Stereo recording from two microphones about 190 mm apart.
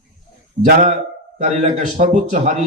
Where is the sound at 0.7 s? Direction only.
35° right (ahead or behind).